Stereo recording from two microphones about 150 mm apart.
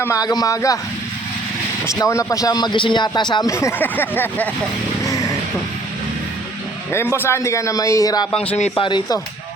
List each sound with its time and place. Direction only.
0.0 s speech: 25° left (ahead or behind)
1.9 s speech: 20° left (ahead or behind)
6.9 s speech: 15° left (ahead or behind)